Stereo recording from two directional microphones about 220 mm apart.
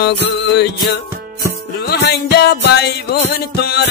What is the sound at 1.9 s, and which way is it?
Music, 50° left (ahead or behind).